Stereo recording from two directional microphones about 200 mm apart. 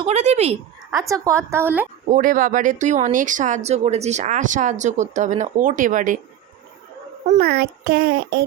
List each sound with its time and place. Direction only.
0.0 s speech: 35° right (ahead or behind)
0.9 s a woman's voice: 15° right (ahead or behind)
2.0 s speech: 40° right (ahead or behind)
7.3 s speech: 50° right (ahead or behind)